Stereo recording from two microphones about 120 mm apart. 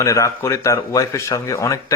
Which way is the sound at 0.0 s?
25° left (ahead or behind).